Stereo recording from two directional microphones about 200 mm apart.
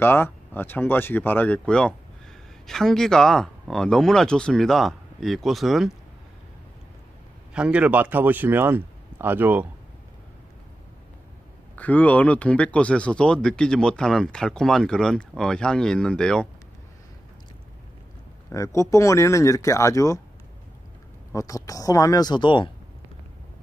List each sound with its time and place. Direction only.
0.0 s speech: 10° left (ahead or behind)
7.5 s a man's voice: 5° right (ahead or behind)
11.7 s speech: 10° left (ahead or behind)
18.5 s speech: 15° left (ahead or behind)
21.3 s speech: 15° left (ahead or behind)